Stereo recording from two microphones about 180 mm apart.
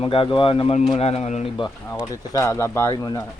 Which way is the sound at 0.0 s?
30° left (ahead or behind).